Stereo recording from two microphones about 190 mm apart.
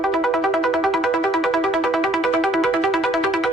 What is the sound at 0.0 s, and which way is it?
Music, centre (ahead or behind).